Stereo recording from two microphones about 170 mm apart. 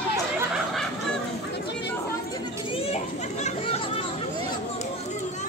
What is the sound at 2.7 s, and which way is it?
Children playing, 35° left (ahead or behind).